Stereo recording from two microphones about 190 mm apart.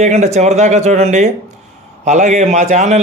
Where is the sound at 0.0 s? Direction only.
35° right (ahead or behind).